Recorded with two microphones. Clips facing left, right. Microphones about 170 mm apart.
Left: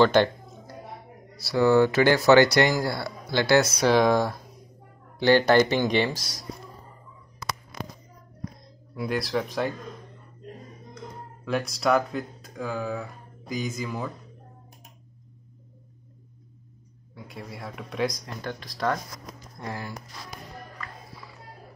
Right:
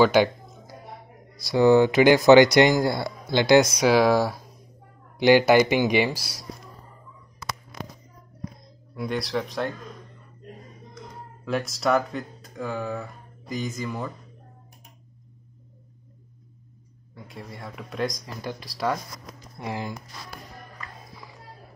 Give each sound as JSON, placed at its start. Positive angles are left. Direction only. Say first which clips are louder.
{"t": 0.0, "sound": "music", "louder": "right 1 dB", "side_deg": -10}
{"t": 1.4, "sound": "speech", "louder": "right 2 dB", "side_deg": -20}
{"t": 3.8, "sound": "speech", "louder": "right 1 dB", "side_deg": -5}
{"t": 8.9, "sound": "a man's voice", "louder": "even", "side_deg": 0}
{"t": 11.4, "sound": "speech", "louder": "even", "side_deg": 0}
{"t": 17.1, "sound": "a man's voice", "louder": "left 1 dB", "side_deg": 0}
{"t": 18.4, "sound": "speech", "louder": "right 1 dB", "side_deg": -10}
{"t": 19.6, "sound": "speech", "louder": "right 3 dB", "side_deg": -20}